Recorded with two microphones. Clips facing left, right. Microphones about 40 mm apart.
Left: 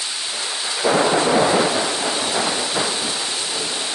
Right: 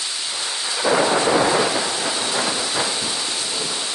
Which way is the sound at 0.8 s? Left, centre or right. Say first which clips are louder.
Left 1 dB; centre.